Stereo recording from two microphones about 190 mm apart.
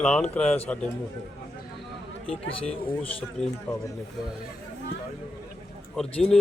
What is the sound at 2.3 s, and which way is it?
Speech, 30° left (ahead or behind).